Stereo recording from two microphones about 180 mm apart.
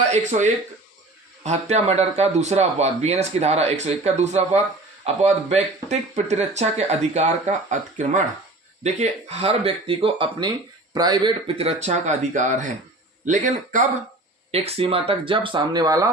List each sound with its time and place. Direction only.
0.0 s speech: 40° right (ahead or behind); by 16.0 s 20° right (ahead or behind)